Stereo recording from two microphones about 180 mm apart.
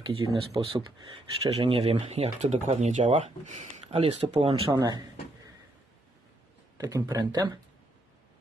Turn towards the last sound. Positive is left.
turn(degrees=-20)  # may be behind; listen again after turning